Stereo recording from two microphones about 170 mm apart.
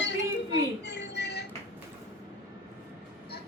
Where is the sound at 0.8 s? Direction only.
90° left.